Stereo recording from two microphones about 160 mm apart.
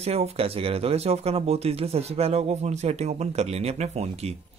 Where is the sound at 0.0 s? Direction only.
40° right (ahead or behind).